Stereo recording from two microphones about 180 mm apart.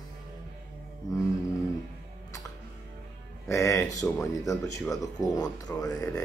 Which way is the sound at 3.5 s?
15° left (ahead or behind).